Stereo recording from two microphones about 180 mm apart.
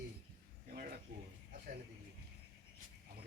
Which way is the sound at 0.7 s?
55° right (ahead or behind).